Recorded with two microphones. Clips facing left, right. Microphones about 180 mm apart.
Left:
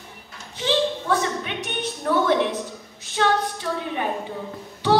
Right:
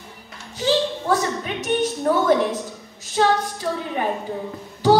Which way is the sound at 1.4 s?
40° right (ahead or behind).